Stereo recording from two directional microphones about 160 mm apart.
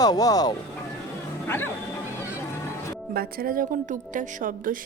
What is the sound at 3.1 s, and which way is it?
A woman's voice, 70° right (ahead or behind).